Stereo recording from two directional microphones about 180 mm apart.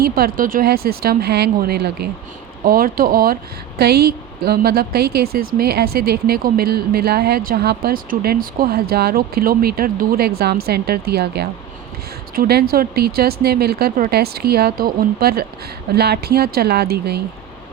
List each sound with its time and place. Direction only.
0.0 s a woman's voice: 55° right (ahead or behind)